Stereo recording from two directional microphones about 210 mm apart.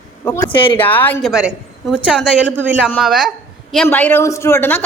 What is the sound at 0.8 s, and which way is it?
Speech, 10° left (ahead or behind).